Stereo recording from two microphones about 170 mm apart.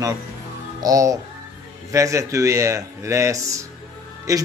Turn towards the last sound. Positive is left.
turn(degrees=-20)  # may be behind; listen again after turning